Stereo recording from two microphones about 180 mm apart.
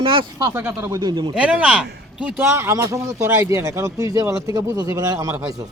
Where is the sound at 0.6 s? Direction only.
15° right (ahead or behind).